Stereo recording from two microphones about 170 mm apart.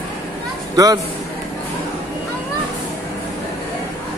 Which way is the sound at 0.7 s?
20° right (ahead or behind).